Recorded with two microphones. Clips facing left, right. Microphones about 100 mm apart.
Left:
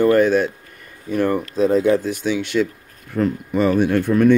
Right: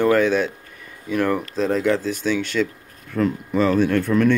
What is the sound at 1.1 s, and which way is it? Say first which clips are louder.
Speech: left 1 dB; 90° right.